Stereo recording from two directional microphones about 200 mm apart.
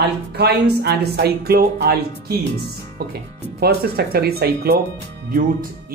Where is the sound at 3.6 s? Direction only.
50° right (ahead or behind).